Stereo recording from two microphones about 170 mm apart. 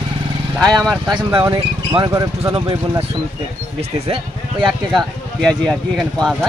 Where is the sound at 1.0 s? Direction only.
25° right (ahead or behind).